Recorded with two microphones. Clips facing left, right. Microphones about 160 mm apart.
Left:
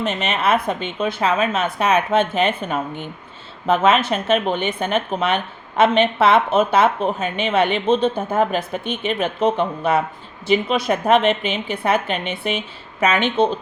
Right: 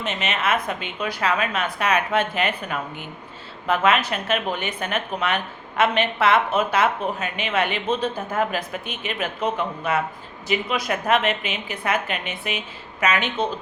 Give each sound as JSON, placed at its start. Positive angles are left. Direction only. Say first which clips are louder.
{"t": 0.0, "sound": "a woman's voice", "louder": "left 5 dB", "side_deg": 30}